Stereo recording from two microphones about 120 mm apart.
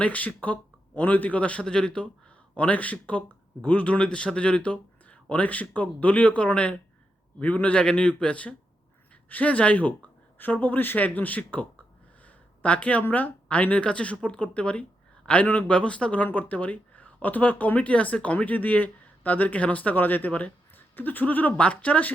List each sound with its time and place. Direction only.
0.0 s speech: 10° left (ahead or behind)